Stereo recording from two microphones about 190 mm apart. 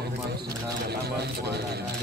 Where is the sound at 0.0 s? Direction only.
55° right (ahead or behind).